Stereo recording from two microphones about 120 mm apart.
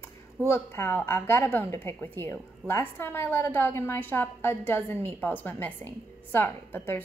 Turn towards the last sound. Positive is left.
turn(degrees=15)  # may be behind; listen again after turning